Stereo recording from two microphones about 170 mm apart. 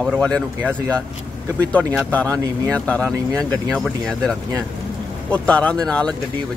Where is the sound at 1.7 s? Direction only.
10° left (ahead or behind).